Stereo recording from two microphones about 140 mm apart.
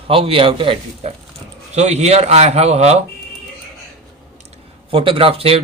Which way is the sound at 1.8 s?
55° right (ahead or behind).